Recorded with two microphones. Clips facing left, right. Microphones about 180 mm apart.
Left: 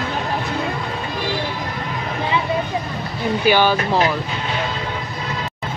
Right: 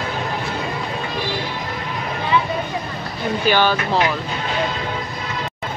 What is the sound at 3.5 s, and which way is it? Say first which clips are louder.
Speech: left 2 dB; 10° left (ahead or behind).